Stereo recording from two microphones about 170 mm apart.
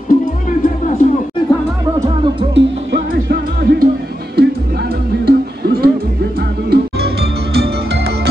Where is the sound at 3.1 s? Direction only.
65° right (ahead or behind).